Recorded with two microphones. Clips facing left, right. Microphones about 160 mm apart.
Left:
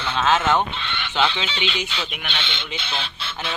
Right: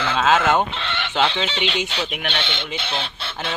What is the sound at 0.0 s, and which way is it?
Bleat, 90° right.